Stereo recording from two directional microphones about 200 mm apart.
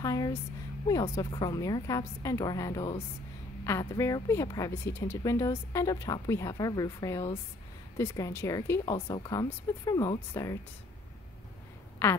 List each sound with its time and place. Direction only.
0.0 s a woman's voice: 15° left (ahead or behind)
8.9 s speech: 30° left (ahead or behind)